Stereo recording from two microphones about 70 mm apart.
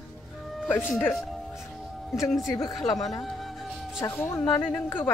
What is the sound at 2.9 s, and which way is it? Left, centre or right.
Speech, left.